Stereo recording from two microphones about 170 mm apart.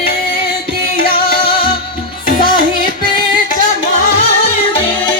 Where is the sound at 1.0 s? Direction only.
60° left (ahead or behind).